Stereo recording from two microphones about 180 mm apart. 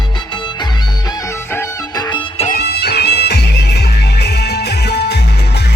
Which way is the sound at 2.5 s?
65° left (ahead or behind).